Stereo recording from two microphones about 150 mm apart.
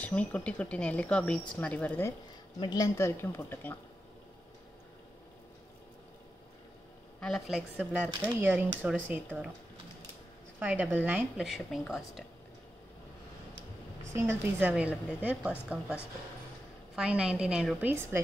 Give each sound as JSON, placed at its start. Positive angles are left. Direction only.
{"t": 0.0, "sound": "speech", "side_deg": 10}
{"t": 2.6, "sound": "speech", "side_deg": 25}
{"t": 7.2, "sound": "a woman's voice", "side_deg": 5}
{"t": 10.6, "sound": "speech", "side_deg": -10}
{"t": 11.4, "sound": "a woman's voice", "side_deg": 0}
{"t": 14.1, "sound": "speech", "side_deg": -15}
{"t": 16.9, "sound": "a woman's voice", "side_deg": -5}